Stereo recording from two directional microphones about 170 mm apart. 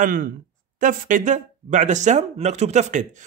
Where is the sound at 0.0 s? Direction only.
55° right (ahead or behind).